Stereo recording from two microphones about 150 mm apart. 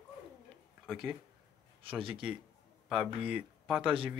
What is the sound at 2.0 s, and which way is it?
Speech, 35° right (ahead or behind).